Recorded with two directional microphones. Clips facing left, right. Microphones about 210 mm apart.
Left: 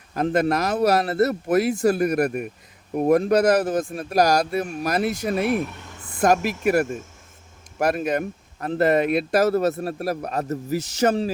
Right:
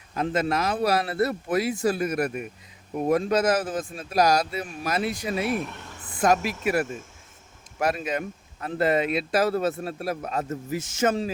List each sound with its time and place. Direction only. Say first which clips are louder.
0.1 s a man's voice: left 4 dB; 45° left (ahead or behind)